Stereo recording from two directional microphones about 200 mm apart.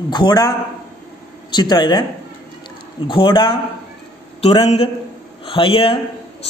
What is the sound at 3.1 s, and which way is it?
A man's voice, 25° left (ahead or behind).